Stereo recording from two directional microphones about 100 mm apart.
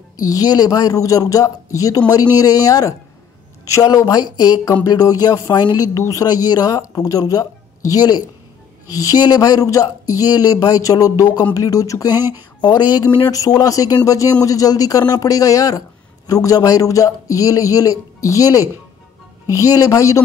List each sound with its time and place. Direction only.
0.2 s speech: 40° left (ahead or behind)